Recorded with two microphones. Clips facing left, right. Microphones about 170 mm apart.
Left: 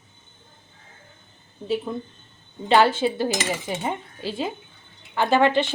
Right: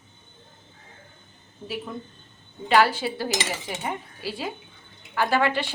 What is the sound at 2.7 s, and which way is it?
Cutlery, 25° left (ahead or behind).